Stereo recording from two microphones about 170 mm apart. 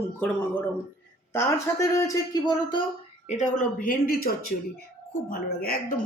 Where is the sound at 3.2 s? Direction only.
45° left (ahead or behind).